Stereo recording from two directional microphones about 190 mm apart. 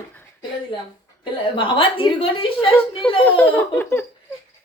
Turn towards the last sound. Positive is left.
turn(degrees=10)  # may be behind; listen again after turning